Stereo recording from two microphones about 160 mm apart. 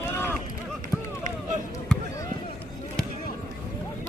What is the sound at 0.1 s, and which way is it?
Run, 15° left (ahead or behind).